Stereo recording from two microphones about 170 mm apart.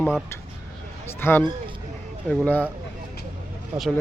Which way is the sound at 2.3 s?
10° left (ahead or behind).